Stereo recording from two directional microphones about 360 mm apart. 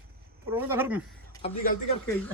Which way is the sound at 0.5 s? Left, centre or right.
Centre.